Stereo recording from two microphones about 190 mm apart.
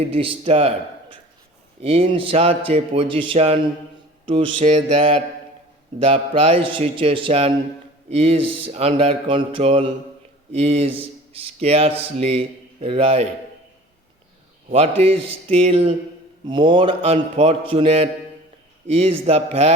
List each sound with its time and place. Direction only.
0.0 s speech: 30° right (ahead or behind)
1.8 s speech: 30° right (ahead or behind)
14.7 s speech: 30° right (ahead or behind)